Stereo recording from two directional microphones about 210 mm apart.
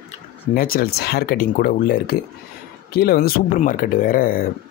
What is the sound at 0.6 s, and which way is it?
Speech, 45° left (ahead or behind).